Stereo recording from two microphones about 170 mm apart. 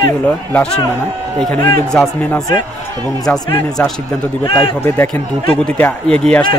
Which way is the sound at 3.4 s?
15° left (ahead or behind).